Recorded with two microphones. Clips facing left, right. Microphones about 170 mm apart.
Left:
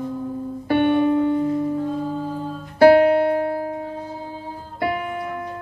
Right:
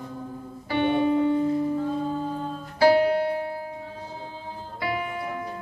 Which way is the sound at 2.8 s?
60° left (ahead or behind).